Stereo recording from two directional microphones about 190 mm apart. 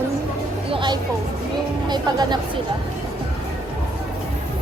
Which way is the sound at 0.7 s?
25° right (ahead or behind).